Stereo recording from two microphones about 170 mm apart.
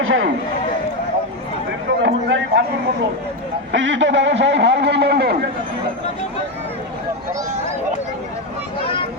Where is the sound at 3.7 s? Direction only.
90° right; by 5.4 s 75° right (ahead or behind).